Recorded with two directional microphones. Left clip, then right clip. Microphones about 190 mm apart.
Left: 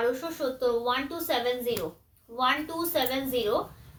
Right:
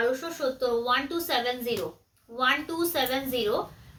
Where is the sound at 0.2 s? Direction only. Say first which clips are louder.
Right 1 dB; 15° right (ahead or behind).